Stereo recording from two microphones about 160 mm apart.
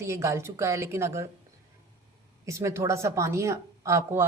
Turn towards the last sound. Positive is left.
turn(degrees=-15)  # may be behind; listen again after turning